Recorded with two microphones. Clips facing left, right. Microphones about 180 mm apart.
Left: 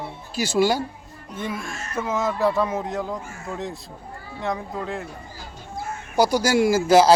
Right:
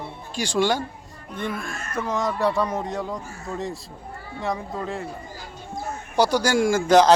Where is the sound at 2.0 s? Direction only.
5° left (ahead or behind).